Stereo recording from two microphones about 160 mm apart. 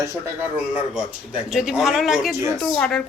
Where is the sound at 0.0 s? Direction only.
15° right (ahead or behind).